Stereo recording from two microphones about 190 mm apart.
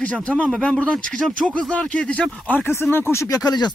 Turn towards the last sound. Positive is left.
turn(degrees=20)  # may be behind; listen again after turning